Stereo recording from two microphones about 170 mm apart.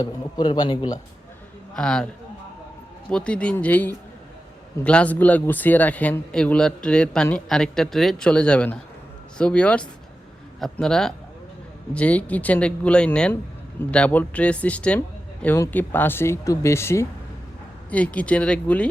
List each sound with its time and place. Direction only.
0.0 s a man's voice: 25° left (ahead or behind)
1.7 s speech: 5° left (ahead or behind)
3.1 s speech: 5° left (ahead or behind)